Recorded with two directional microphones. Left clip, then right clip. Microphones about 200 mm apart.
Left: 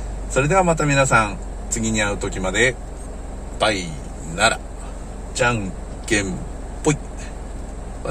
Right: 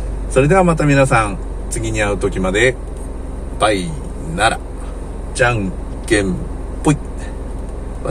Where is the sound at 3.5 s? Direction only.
10° left (ahead or behind).